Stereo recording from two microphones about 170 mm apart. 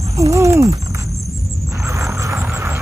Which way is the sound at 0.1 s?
20° right (ahead or behind).